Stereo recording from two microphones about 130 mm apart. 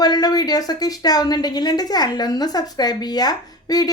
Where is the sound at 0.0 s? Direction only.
30° left (ahead or behind).